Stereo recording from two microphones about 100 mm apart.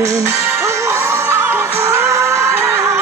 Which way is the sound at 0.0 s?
30° right (ahead or behind).